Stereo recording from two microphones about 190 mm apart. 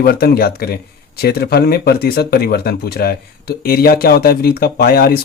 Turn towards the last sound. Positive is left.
turn(degrees=55)  # may be behind; listen again after turning